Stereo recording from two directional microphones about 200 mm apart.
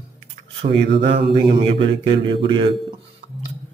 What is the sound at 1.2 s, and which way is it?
A man's voice, 25° right (ahead or behind).